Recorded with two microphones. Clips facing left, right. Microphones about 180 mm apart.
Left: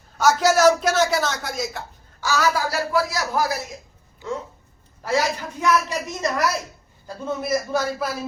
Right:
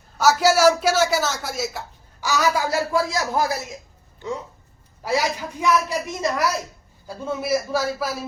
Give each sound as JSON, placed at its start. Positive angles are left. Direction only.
{"t": 0.2, "sound": "speech", "side_deg": -5}
{"t": 2.2, "sound": "speech", "side_deg": -15}
{"t": 5.0, "sound": "a woman's voice", "side_deg": -15}